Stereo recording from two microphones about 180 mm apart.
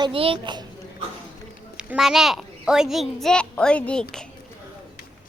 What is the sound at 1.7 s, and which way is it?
A child's voice, 5° right (ahead or behind).